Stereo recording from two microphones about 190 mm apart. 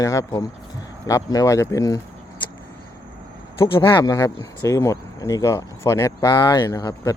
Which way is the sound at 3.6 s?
25° left (ahead or behind).